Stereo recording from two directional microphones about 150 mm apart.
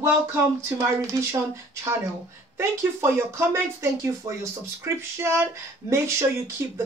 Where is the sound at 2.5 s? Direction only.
15° right (ahead or behind).